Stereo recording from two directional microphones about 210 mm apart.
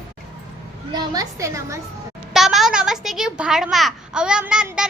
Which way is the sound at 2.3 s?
Centre (ahead or behind).